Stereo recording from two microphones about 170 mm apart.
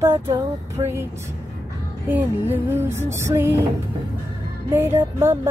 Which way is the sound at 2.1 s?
10° right (ahead or behind).